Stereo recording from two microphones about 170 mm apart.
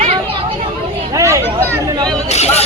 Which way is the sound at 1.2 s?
20° right (ahead or behind).